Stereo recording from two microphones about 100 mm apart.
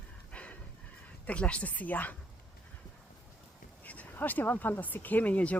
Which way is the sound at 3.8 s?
15° left (ahead or behind).